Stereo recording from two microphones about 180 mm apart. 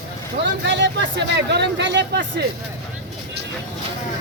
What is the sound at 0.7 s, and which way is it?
Speech, 80° right.